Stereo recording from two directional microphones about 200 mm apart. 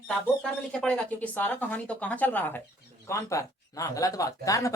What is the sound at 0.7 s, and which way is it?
Speech, 5° left (ahead or behind).